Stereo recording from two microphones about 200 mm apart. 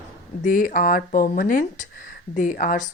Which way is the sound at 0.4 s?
45° left (ahead or behind).